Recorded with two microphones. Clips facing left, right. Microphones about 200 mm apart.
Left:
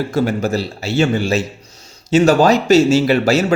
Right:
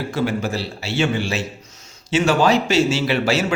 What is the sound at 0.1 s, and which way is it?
A man's voice, 40° left (ahead or behind).